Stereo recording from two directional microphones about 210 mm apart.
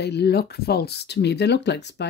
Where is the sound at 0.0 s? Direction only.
50° left (ahead or behind).